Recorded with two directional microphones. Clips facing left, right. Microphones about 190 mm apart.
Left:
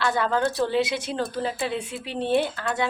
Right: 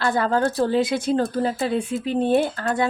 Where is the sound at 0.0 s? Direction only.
40° right (ahead or behind).